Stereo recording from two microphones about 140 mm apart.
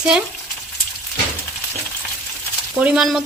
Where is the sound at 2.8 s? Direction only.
5° right (ahead or behind).